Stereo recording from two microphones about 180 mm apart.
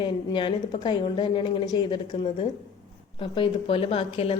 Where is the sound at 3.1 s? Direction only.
30° left (ahead or behind).